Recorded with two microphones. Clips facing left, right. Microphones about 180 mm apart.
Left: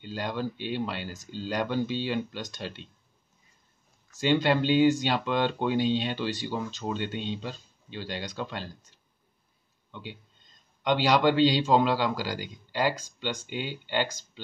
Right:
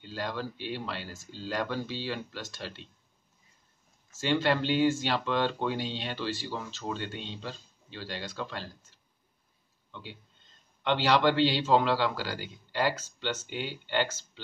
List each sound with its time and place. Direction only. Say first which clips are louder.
0.0 s speech: left 3 dB; 20° left (ahead or behind)
4.2 s speech: left 3 dB; 15° left (ahead or behind)
9.8 s a sound: left 3 dB; 15° left (ahead or behind)
10.8 s speech: left 2 dB; 15° left (ahead or behind)